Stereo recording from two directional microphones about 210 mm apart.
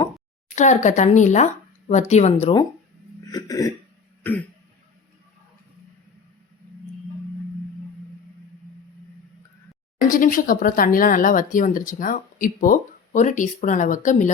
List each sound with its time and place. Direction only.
0.5 s speech: 35° left (ahead or behind)
3.3 s throat clearing: 15° left (ahead or behind)
10.1 s speech: 40° left (ahead or behind)